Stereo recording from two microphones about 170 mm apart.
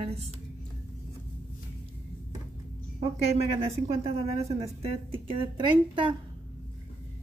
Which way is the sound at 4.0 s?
40° right (ahead or behind).